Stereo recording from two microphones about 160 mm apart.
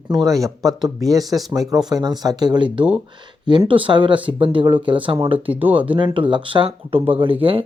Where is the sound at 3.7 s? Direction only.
30° right (ahead or behind).